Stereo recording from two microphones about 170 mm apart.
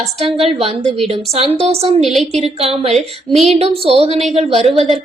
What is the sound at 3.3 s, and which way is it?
Speech, centre (ahead or behind).